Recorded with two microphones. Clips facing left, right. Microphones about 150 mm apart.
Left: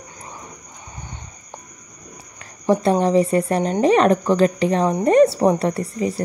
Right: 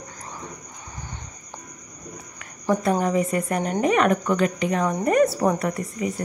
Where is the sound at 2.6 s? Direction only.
30° left (ahead or behind).